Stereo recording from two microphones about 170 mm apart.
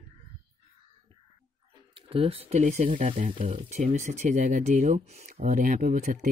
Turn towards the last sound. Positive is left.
turn(degrees=-55)  # may be behind; listen again after turning